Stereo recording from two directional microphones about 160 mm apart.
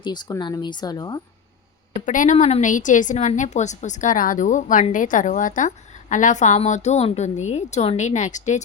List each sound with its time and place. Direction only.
0.0 s speech: 25° left (ahead or behind)
1.9 s a woman's voice: 50° left (ahead or behind)